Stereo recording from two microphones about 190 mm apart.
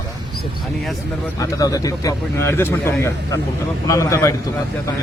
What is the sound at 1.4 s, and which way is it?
Speech, 20° left (ahead or behind).